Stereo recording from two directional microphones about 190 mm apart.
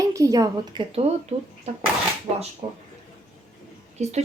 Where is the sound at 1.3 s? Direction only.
35° right (ahead or behind).